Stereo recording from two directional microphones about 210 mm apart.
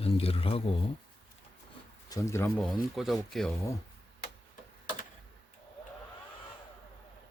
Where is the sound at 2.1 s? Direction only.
15° left (ahead or behind).